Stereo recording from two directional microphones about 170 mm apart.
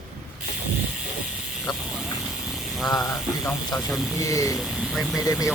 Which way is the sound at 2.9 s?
20° left (ahead or behind).